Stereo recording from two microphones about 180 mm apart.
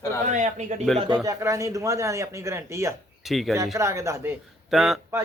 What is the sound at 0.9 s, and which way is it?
Speech, centre (ahead or behind).